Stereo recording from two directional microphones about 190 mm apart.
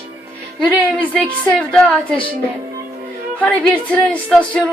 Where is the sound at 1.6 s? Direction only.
5° left (ahead or behind).